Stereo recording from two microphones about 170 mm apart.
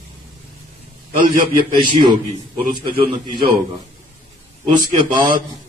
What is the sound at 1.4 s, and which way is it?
Speech, 30° right (ahead or behind).